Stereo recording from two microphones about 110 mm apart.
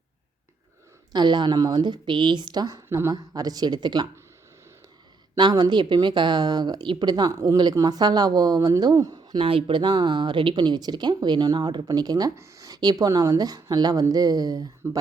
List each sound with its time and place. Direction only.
1.1 s speech: 40° right (ahead or behind)
5.4 s speech: 40° right (ahead or behind)
9.4 s speech: 55° right (ahead or behind); by 14.7 s 35° right (ahead or behind)